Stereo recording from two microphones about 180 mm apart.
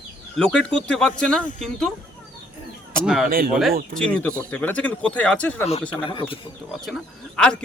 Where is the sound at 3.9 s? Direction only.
5° left (ahead or behind).